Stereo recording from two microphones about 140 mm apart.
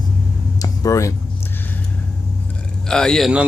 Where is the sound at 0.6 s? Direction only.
20° left (ahead or behind).